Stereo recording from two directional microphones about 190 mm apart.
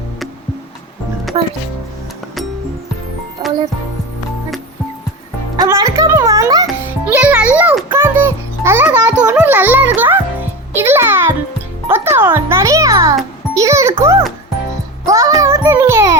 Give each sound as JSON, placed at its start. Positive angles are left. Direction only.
{"t": 1.3, "sound": "music", "side_deg": -30}
{"t": 3.4, "sound": "music", "side_deg": -20}
{"t": 5.5, "sound": "music", "side_deg": -15}